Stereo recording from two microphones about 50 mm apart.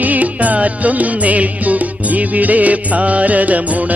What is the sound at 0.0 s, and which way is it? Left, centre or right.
Music, right.